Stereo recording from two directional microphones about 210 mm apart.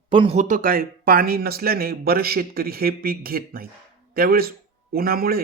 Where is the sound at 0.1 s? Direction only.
25° right (ahead or behind).